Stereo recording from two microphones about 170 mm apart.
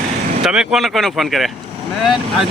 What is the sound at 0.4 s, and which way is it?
Speech, 5° right (ahead or behind).